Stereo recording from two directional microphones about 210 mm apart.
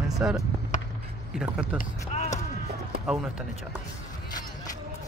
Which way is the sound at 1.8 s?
35° left (ahead or behind).